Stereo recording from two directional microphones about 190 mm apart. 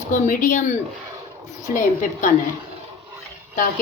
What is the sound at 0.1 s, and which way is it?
Speech, 45° left (ahead or behind).